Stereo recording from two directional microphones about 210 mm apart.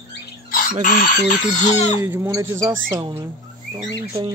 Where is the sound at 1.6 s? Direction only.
30° left (ahead or behind).